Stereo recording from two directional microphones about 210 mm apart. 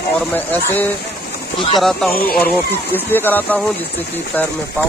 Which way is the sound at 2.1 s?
45° left (ahead or behind).